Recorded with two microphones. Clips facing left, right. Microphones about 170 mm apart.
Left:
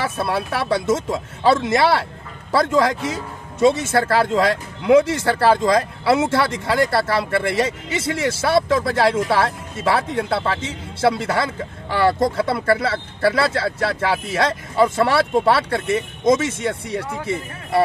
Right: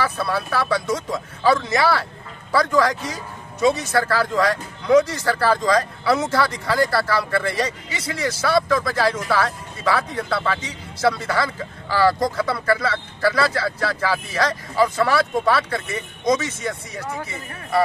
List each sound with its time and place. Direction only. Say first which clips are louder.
0.0 s a man's voice: left 1 dB; 25° left (ahead or behind)